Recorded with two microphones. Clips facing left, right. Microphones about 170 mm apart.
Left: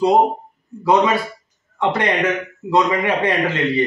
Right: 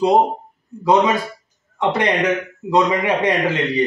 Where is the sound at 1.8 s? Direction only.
15° right (ahead or behind).